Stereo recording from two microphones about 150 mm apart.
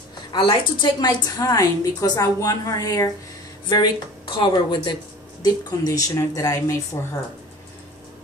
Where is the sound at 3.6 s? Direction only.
30° left (ahead or behind).